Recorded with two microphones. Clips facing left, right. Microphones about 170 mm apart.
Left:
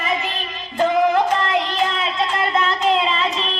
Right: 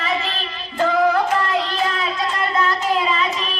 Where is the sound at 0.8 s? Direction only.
20° left (ahead or behind).